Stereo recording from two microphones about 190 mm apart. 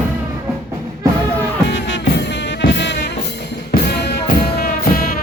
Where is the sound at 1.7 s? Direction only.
70° left (ahead or behind); by 5.2 s 50° left (ahead or behind).